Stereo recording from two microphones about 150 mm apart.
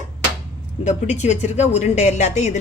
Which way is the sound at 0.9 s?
50° left (ahead or behind).